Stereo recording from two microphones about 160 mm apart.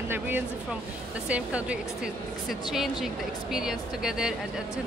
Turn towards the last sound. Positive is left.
turn(degrees=-5)  # may be behind; listen again after turning